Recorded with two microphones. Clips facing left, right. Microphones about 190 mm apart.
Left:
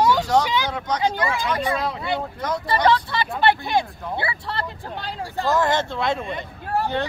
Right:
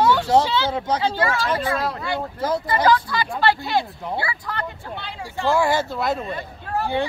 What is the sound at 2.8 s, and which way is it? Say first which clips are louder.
Speech: even; 25° left (ahead or behind).